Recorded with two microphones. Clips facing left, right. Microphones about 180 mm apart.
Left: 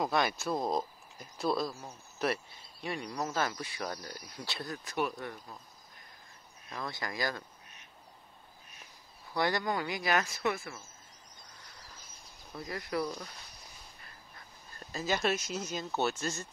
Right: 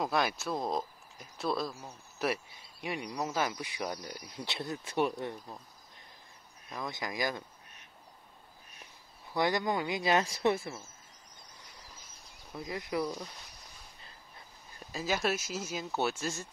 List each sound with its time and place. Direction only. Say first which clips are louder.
0.0 s speech: left 1 dB; centre (ahead or behind)
2.2 s speech: even; 10° right (ahead or behind)
6.7 s speech: right 1 dB; 15° right (ahead or behind)
9.3 s speech: right 1 dB; 20° right (ahead or behind)
12.5 s speech: right 1 dB; 15° right (ahead or behind)
14.8 s speech: even; 10° right (ahead or behind)